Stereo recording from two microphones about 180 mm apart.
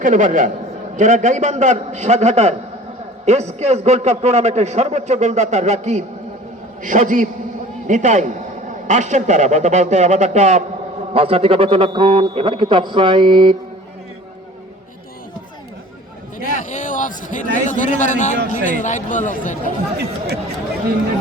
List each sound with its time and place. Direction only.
0.0 s a man's voice: 45° right (ahead or behind); by 13.6 s 25° right (ahead or behind)
16.4 s a man's voice: 45° left (ahead or behind)
20.0 s speech: 65° right (ahead or behind)